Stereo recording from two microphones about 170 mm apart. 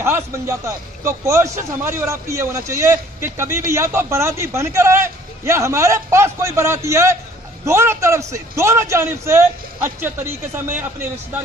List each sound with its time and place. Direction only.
0.0 s a man's voice: 15° right (ahead or behind)